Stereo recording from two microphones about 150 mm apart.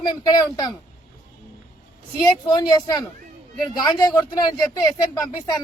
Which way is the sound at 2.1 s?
30° left (ahead or behind).